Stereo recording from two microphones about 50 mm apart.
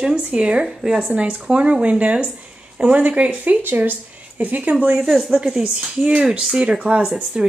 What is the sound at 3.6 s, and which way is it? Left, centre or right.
Speech, right.